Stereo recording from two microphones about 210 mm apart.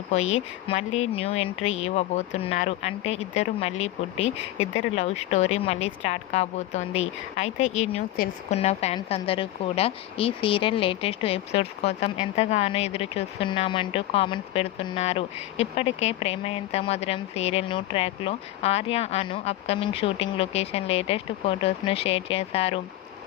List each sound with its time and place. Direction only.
0.1 s speech: 30° left (ahead or behind)
8.1 s speech: 45° left (ahead or behind)
8.5 s speech: 30° left (ahead or behind)